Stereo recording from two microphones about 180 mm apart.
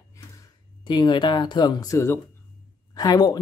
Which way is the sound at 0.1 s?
20° left (ahead or behind).